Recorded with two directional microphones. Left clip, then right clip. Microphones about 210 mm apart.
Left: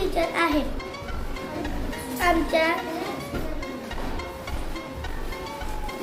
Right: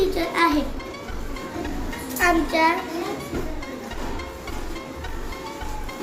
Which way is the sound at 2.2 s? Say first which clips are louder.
Right 2 dB; 5° left (ahead or behind).